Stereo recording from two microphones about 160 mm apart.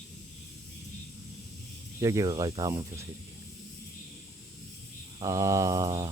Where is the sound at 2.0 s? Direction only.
20° right (ahead or behind).